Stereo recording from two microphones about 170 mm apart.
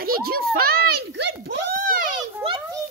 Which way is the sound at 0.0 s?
65° right (ahead or behind).